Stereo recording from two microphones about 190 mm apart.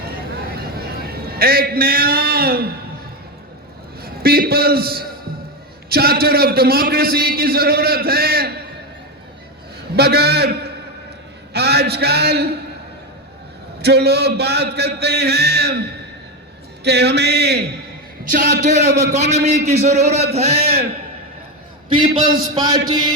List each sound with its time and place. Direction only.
0.5 s a sound: 55° right (ahead or behind)
4.0 s a man's voice: 55° right (ahead or behind)
9.9 s a man's voice: 60° right (ahead or behind)
13.8 s a man's voice: 60° right (ahead or behind)
16.8 s a man's voice: 60° right (ahead or behind)
18.6 s a man's voice: 40° right (ahead or behind)
21.9 s a man's voice: 25° right (ahead or behind)